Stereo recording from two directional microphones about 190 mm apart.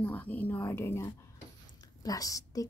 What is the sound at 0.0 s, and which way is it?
A woman's voice, 10° left (ahead or behind).